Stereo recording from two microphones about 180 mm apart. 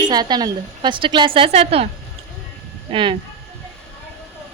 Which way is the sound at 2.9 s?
30° right (ahead or behind).